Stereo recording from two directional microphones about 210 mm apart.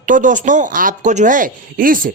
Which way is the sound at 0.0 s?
35° right (ahead or behind).